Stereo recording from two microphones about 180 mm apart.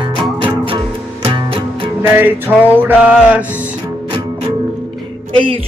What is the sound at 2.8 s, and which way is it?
Mantra, 10° right (ahead or behind).